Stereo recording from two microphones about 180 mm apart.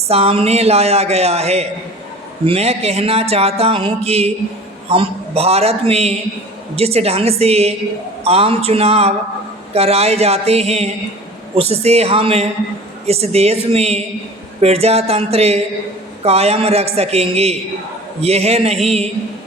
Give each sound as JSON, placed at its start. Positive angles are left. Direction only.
{"t": 0.1, "sound": "speech", "side_deg": -35}